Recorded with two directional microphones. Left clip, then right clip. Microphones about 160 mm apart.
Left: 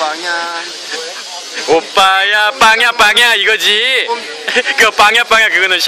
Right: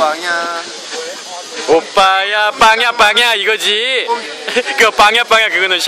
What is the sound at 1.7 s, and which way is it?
Speech, 5° right (ahead or behind).